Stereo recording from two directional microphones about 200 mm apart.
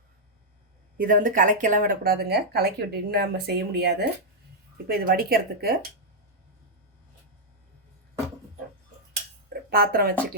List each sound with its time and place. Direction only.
0.9 s speech: 40° right (ahead or behind)
9.5 s speech: 50° right (ahead or behind)